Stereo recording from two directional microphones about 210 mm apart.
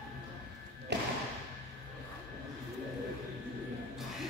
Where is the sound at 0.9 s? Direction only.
55° right (ahead or behind).